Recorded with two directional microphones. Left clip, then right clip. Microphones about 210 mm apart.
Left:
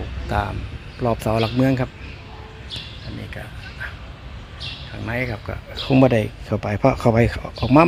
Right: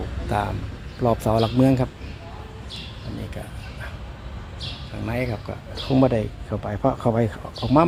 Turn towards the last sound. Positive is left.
turn(degrees=25)  # may be behind; listen again after turning